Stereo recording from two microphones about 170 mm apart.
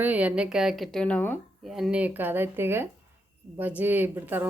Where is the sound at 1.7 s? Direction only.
5° right (ahead or behind).